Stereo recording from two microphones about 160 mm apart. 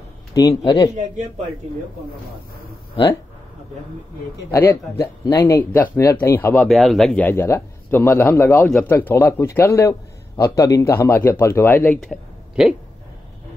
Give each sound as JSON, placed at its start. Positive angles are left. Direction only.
{"t": 0.3, "sound": "a man's voice", "side_deg": 20}
{"t": 4.5, "sound": "a man's voice", "side_deg": 15}
{"t": 6.7, "sound": "a man's voice", "side_deg": 0}
{"t": 8.6, "sound": "speech", "side_deg": 5}
{"t": 8.9, "sound": "a man's voice", "side_deg": 15}
{"t": 12.0, "sound": "a sound", "side_deg": 0}